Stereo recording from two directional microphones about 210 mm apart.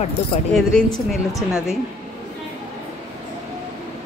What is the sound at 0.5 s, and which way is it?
Speech, centre (ahead or behind).